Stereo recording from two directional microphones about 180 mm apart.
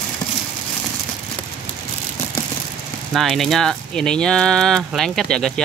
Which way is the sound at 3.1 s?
Centre (ahead or behind).